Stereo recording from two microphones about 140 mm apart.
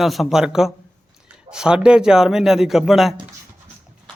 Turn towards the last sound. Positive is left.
turn(degrees=0)  # may be behind; listen again after turning